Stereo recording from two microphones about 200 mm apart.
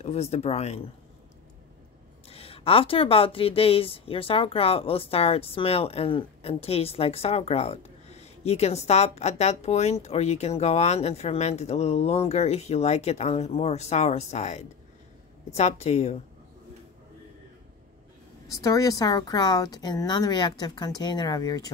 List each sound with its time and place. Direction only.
0.0 s speech: 30° left (ahead or behind)
2.2 s speech: 30° left (ahead or behind)
18.5 s a woman's voice: 15° left (ahead or behind)